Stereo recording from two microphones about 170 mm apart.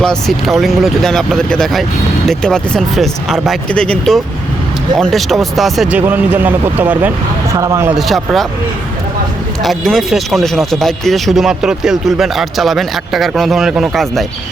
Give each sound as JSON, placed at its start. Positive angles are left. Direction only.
{"t": 0.0, "sound": "speech", "side_deg": 0}
{"t": 7.9, "sound": "speech", "side_deg": 0}
{"t": 9.6, "sound": "speech", "side_deg": 0}